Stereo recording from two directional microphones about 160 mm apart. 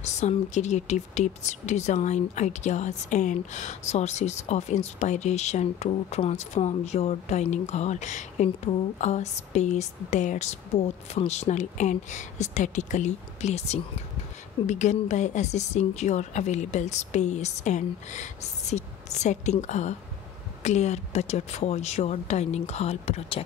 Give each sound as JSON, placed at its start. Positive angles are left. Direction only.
{"t": 0.0, "sound": "speech", "side_deg": 45}